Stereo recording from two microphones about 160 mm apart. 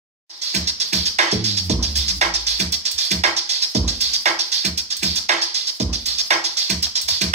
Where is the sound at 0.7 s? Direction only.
45° right (ahead or behind).